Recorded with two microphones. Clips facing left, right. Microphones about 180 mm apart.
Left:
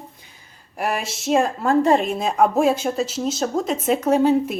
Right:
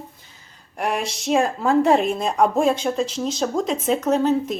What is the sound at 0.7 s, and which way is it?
Speech, 5° left (ahead or behind).